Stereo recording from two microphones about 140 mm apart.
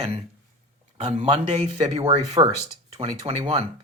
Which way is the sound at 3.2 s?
45° right (ahead or behind).